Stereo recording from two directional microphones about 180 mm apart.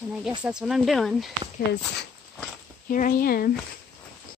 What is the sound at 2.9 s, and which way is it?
Speech, 50° left (ahead or behind).